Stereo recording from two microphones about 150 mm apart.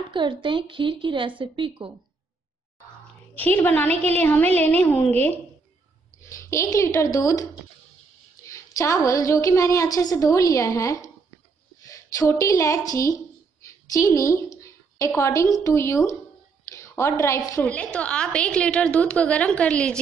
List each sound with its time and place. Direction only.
0.1 s a woman's voice: 35° right (ahead or behind)
3.3 s a woman's voice: 10° left (ahead or behind)
8.5 s a woman's voice: 20° left (ahead or behind)
16.6 s a sound: 20° left (ahead or behind)
17.6 s a woman's voice: 10° left (ahead or behind)